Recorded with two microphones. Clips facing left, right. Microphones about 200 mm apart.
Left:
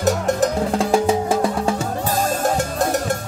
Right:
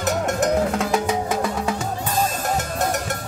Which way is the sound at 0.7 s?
30° left (ahead or behind).